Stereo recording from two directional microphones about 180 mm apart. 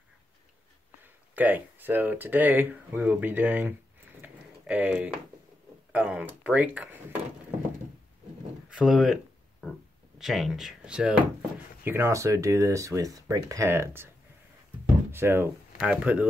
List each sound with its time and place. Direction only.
1.3 s speech: 10° right (ahead or behind)
4.2 s a sound: 10° right (ahead or behind)
5.9 s speech: 5° right (ahead or behind)
8.6 s speech: 5° right (ahead or behind)